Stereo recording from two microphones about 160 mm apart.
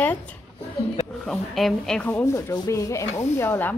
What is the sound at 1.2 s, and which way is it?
A woman's voice, centre (ahead or behind).